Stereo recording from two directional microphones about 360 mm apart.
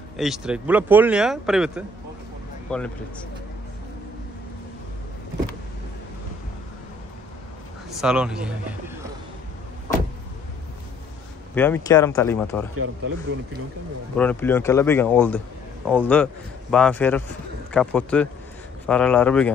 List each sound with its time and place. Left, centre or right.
0.2 s speech: centre
7.9 s speech: centre
11.5 s speech: centre
12.7 s speech: right
14.1 s speech: centre